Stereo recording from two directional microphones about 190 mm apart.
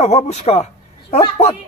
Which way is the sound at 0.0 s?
35° left (ahead or behind).